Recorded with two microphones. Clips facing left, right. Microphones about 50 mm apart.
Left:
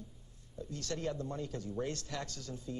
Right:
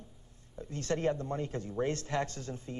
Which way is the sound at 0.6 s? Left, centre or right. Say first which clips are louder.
Right 6 dB; right.